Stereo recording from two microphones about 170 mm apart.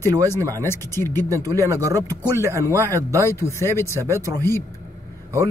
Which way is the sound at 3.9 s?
15° right (ahead or behind).